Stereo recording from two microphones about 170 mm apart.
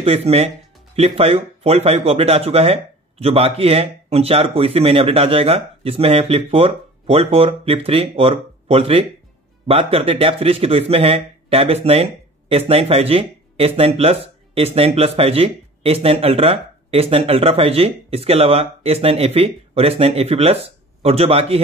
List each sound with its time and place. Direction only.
0.0 s a man's voice: 35° right (ahead or behind)